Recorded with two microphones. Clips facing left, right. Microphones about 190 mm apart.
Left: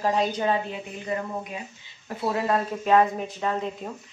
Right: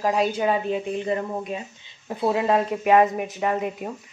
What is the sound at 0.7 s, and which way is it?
Speech, 25° right (ahead or behind).